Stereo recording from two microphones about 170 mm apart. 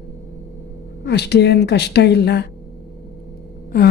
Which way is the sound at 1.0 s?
80° left.